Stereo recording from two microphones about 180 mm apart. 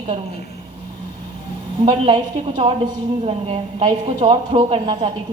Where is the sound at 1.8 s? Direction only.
35° right (ahead or behind).